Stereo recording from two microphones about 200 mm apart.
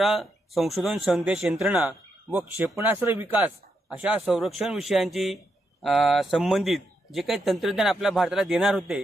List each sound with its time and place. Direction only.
0.0 s speech: centre (ahead or behind)